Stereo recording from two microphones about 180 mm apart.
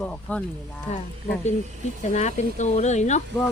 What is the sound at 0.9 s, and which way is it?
Speech, 40° left (ahead or behind).